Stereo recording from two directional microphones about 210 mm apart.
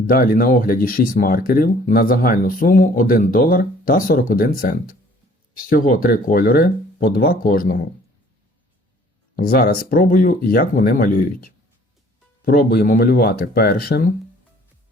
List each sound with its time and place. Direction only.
0.1 s speech: 45° left (ahead or behind)
9.3 s speech: 45° left (ahead or behind)